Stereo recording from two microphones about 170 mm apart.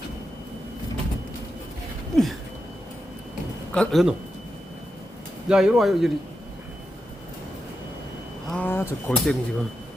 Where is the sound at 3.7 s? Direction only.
5° left (ahead or behind).